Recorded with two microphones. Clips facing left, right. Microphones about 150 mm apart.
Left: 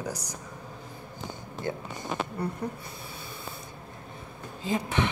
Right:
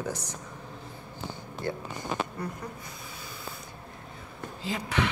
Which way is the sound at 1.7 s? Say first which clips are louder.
Even; 20° left (ahead or behind).